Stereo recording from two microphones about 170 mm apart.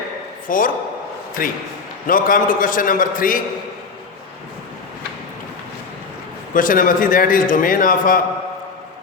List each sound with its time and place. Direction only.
0.4 s a man's voice: 55° left (ahead or behind)
6.5 s a man's voice: 55° left (ahead or behind)